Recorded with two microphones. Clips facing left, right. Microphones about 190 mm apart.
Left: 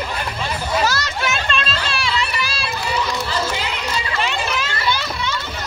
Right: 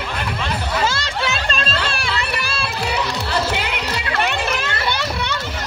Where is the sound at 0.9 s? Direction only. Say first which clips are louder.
Even; 30° right (ahead or behind).